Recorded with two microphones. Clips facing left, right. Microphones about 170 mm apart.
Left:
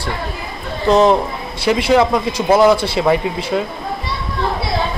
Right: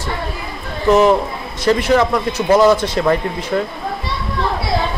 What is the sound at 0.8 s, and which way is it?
A man's voice, 20° left (ahead or behind).